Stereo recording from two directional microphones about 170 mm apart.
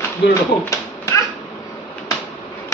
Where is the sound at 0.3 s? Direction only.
20° left (ahead or behind).